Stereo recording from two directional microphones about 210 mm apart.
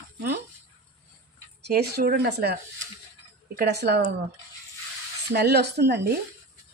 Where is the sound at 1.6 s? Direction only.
50° right (ahead or behind).